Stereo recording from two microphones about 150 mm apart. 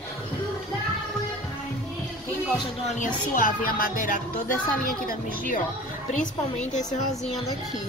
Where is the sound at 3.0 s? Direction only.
70° left (ahead or behind).